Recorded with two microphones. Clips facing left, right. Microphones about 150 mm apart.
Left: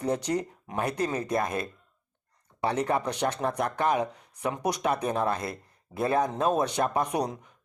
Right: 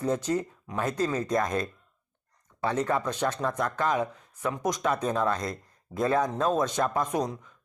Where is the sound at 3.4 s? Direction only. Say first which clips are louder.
Left 2 dB; 15° left (ahead or behind).